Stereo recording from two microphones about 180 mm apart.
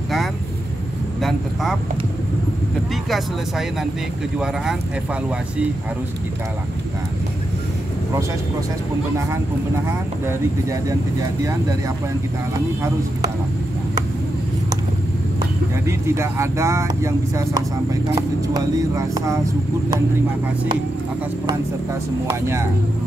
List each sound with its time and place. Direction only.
1.2 s speech: centre (ahead or behind)
9.8 s speech: 15° right (ahead or behind)
15.9 s speech: 15° right (ahead or behind)
22.3 s speech: 15° right (ahead or behind)